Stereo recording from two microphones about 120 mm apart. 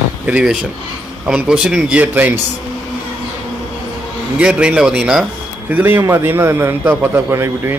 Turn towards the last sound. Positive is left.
turn(degrees=-20)  # may be behind; listen again after turning